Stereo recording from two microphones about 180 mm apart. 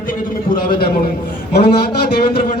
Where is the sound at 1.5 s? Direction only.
60° left (ahead or behind).